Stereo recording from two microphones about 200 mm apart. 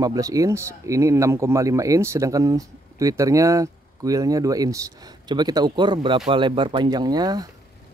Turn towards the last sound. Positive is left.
turn(degrees=-20)  # may be behind; listen again after turning